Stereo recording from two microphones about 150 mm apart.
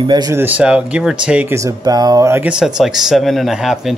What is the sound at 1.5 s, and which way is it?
Speech, 20° right (ahead or behind).